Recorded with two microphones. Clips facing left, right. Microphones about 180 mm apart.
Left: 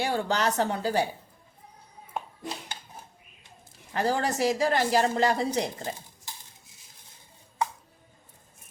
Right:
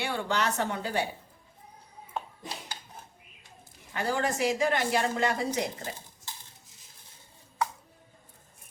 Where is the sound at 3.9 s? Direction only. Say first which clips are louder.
Left 3 dB; 35° left (ahead or behind).